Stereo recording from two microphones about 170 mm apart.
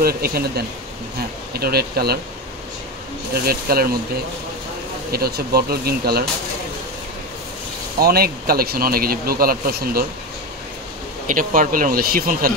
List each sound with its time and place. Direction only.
0.0 s speech: 65° right (ahead or behind)
3.3 s speech: 65° right (ahead or behind)
5.1 s speech: 65° right (ahead or behind)
8.0 s speech: 65° right (ahead or behind)
11.2 s speech: 50° right (ahead or behind)